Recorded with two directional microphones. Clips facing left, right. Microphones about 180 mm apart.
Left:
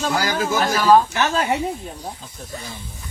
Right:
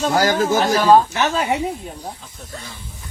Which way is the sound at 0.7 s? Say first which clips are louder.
Even; 15° right (ahead or behind).